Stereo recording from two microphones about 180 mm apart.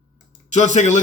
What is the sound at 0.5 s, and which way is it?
Speech, 40° left (ahead or behind).